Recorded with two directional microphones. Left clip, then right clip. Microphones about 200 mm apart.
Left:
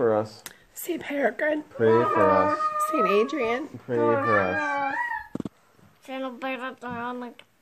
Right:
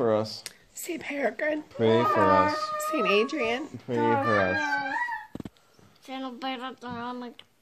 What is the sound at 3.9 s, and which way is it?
Speech, 50° right (ahead or behind).